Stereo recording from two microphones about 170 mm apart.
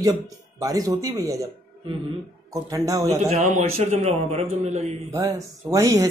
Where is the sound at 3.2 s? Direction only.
45° right (ahead or behind).